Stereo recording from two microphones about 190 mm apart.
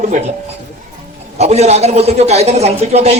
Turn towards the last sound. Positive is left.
turn(degrees=-35)  # may be behind; listen again after turning